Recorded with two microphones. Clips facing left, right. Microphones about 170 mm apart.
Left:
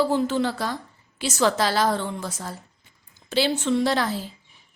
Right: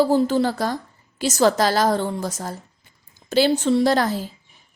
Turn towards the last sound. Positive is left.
turn(degrees=-45)  # may be behind; listen again after turning